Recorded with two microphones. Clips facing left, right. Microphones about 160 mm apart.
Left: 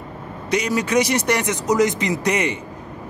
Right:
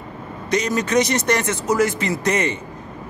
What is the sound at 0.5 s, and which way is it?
A man's voice, 10° left (ahead or behind).